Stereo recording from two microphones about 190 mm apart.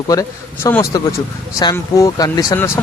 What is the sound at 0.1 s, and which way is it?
A man's voice, 15° left (ahead or behind).